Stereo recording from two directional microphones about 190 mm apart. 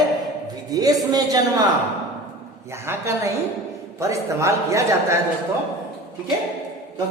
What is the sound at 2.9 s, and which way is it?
A woman's voice, 15° right (ahead or behind).